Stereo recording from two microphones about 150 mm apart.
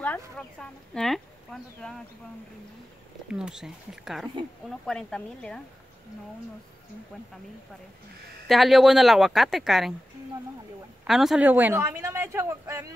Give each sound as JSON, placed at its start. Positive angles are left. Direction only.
{"t": 0.0, "sound": "speech", "side_deg": 10}
{"t": 3.3, "sound": "speech", "side_deg": -5}
{"t": 8.5, "sound": "speech", "side_deg": 0}
{"t": 11.1, "sound": "a woman's voice", "side_deg": 0}